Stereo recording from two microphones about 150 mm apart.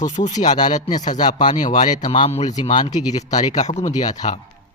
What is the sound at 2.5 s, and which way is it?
Speech, 30° left (ahead or behind).